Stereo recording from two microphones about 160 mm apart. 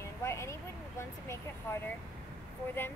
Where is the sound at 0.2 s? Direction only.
15° left (ahead or behind).